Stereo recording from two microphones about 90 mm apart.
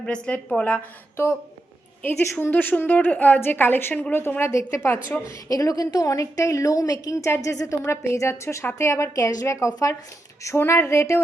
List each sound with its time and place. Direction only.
0.0 s a woman's voice: 10° left (ahead or behind)
1.1 s a woman's voice: 30° left (ahead or behind)
5.5 s a woman's voice: 40° left (ahead or behind)